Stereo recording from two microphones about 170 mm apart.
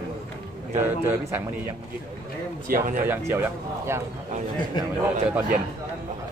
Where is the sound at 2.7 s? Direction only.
55° right (ahead or behind).